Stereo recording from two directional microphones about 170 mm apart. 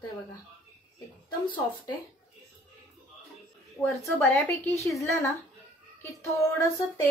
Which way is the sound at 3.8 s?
15° left (ahead or behind).